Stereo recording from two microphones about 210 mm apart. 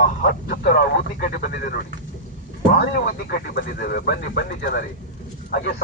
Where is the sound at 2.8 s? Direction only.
45° left (ahead or behind).